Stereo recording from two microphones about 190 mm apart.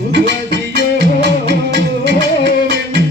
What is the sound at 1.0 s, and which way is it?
Music, 65° right (ahead or behind).